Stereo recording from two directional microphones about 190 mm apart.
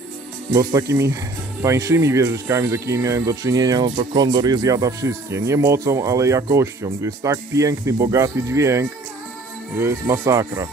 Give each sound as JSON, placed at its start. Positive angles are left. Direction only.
{"t": 0.5, "sound": "speech", "side_deg": -20}